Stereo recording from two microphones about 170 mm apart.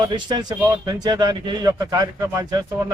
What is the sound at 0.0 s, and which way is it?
A man's voice, 25° right (ahead or behind).